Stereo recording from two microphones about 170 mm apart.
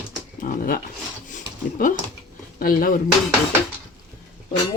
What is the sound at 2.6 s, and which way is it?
Speech, 60° left (ahead or behind).